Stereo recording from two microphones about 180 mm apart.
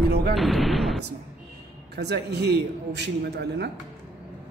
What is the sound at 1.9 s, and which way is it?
A man's voice, 65° right (ahead or behind).